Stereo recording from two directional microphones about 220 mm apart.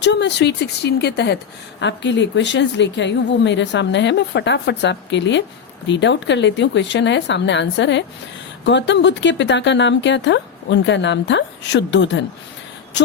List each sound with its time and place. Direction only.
0.0 s speech: 55° left (ahead or behind)